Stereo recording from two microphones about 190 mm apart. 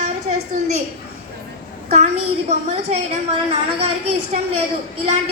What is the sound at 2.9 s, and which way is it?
Speech, 40° right (ahead or behind).